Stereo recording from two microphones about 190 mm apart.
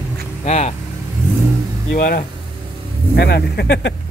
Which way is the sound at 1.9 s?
50° left (ahead or behind).